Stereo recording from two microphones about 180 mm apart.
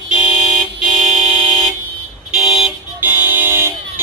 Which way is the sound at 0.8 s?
5° right (ahead or behind).